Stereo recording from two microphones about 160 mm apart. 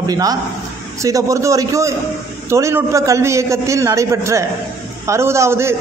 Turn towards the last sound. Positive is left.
turn(degrees=-15)  # may be behind; listen again after turning